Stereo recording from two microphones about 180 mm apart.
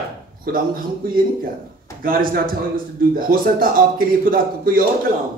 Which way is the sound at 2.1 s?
55° right (ahead or behind).